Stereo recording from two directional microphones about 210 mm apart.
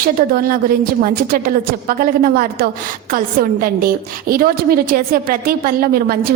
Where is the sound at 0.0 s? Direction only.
45° right (ahead or behind).